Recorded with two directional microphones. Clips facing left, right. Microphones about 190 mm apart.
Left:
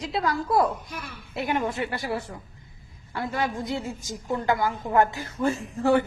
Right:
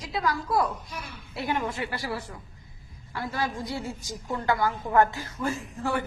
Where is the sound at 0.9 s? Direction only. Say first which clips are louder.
Left 2 dB; 55° left (ahead or behind).